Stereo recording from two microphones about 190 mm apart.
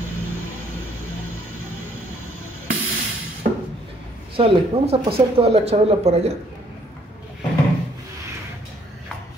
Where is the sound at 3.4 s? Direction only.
50° right (ahead or behind).